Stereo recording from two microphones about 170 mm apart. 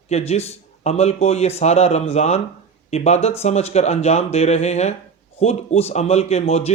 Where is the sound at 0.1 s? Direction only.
40° left (ahead or behind).